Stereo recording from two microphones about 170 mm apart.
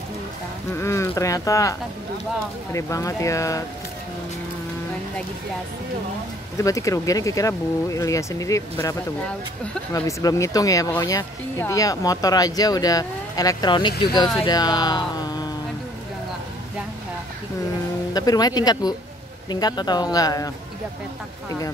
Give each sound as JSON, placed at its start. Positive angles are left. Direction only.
{"t": 0.7, "sound": "speech", "side_deg": 15}
{"t": 6.6, "sound": "speech", "side_deg": 20}
{"t": 9.9, "sound": "speech", "side_deg": 20}
{"t": 18.1, "sound": "speech", "side_deg": 20}